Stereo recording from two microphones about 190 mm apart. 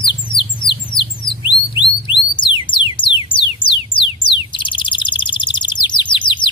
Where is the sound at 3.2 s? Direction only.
25° left (ahead or behind).